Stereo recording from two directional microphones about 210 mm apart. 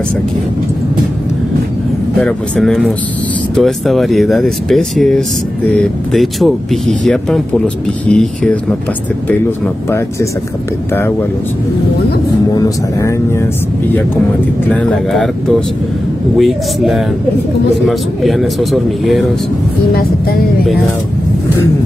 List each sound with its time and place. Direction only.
2.1 s speech: 5° left (ahead or behind)
12.5 s speech: 15° left (ahead or behind)
14.7 s speech: 5° left (ahead or behind)
16.3 s speech: centre (ahead or behind)
19.9 s music: 45° left (ahead or behind)